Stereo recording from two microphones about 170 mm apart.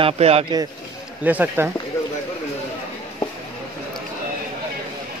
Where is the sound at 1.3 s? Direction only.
10° right (ahead or behind).